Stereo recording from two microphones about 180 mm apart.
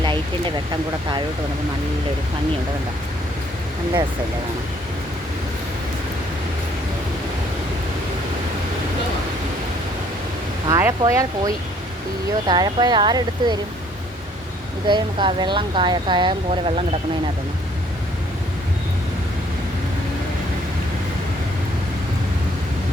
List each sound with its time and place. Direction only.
10.7 s speech: 20° right (ahead or behind)
14.8 s speech: 25° right (ahead or behind)